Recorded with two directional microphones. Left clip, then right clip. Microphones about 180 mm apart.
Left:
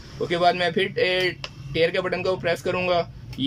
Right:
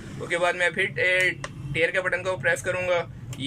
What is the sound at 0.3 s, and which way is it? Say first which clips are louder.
A man's voice: left 3 dB; 35° left (ahead or behind).